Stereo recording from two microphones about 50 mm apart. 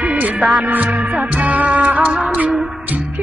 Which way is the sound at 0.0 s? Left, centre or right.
Right.